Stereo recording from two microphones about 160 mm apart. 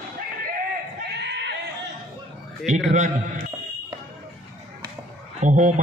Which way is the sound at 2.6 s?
50° right (ahead or behind).